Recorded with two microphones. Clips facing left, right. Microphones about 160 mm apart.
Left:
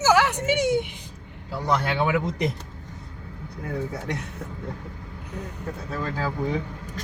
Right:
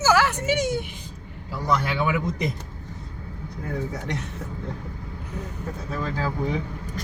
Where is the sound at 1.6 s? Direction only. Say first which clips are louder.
Even; 30° left (ahead or behind).